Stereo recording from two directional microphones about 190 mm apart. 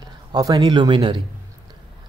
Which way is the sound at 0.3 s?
20° right (ahead or behind).